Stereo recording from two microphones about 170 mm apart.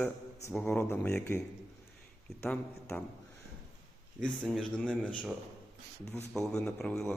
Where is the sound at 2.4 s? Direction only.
10° left (ahead or behind).